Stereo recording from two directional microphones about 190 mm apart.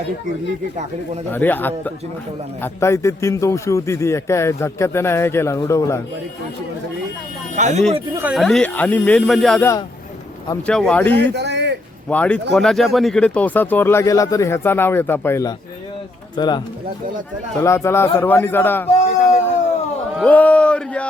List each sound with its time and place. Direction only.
1.3 s speech: 10° left (ahead or behind)
7.5 s speech: 40° right (ahead or behind)
8.1 s speech: 10° right (ahead or behind)
8.4 s speech: centre (ahead or behind)
10.7 s speech: 5° left (ahead or behind)
11.2 s a sound: 65° right (ahead or behind)
12.0 s speech: 5° left (ahead or behind); by 16.6 s 25° left (ahead or behind)
17.6 s speech: 15° left (ahead or behind)
20.1 s speech: 5° left (ahead or behind)